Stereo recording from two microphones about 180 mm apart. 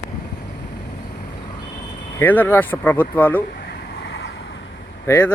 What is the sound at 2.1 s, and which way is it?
Speech, 10° left (ahead or behind).